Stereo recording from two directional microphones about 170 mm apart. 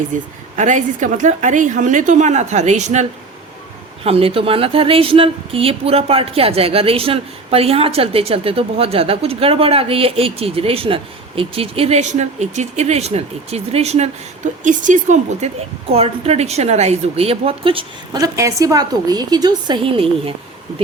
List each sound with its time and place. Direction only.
0.1 s a woman's voice: 50° right (ahead or behind)
15.9 s speech: 35° right (ahead or behind)